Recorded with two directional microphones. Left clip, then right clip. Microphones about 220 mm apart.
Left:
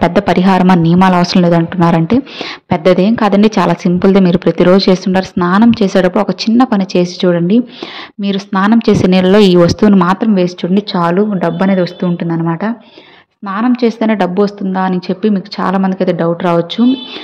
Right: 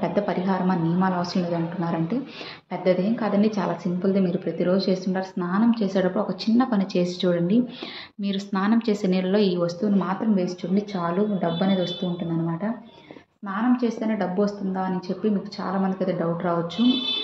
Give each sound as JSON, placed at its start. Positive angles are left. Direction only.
{"t": 0.0, "sound": "a woman's voice", "side_deg": 50}